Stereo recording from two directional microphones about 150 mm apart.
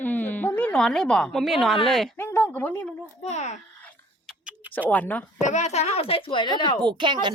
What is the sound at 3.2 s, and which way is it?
Speech, 50° left (ahead or behind).